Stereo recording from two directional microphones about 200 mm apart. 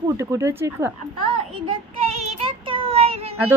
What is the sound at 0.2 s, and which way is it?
Speech, 15° right (ahead or behind).